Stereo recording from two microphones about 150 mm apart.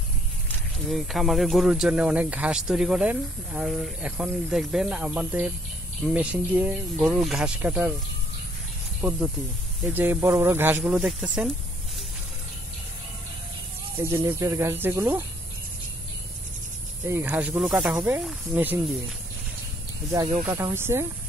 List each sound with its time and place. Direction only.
0.8 s speech: centre (ahead or behind)
9.0 s speech: 15° right (ahead or behind)
13.9 s speech: 15° right (ahead or behind)
17.1 s speech: 15° right (ahead or behind)
20.4 s speech: 20° right (ahead or behind)